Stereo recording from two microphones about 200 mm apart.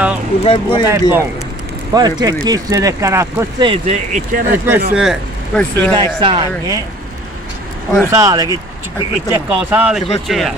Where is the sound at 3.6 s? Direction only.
35° right (ahead or behind).